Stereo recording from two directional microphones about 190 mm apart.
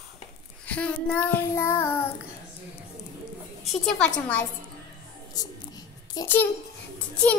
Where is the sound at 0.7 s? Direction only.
5° left (ahead or behind).